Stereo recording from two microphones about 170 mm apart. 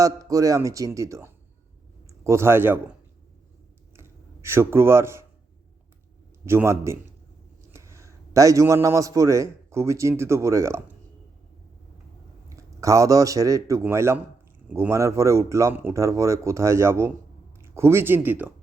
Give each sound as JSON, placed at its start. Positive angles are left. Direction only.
{"t": 0.0, "sound": "a man's voice", "side_deg": -20}
{"t": 3.9, "sound": "a sound", "side_deg": -15}
{"t": 6.4, "sound": "a man's voice", "side_deg": -15}
{"t": 12.5, "sound": "a man's voice", "side_deg": -20}